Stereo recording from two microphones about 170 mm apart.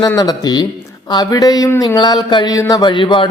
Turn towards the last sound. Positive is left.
turn(degrees=30)  # may be behind; listen again after turning